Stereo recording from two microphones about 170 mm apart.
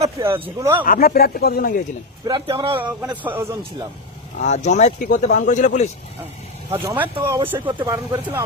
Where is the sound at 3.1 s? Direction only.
10° right (ahead or behind).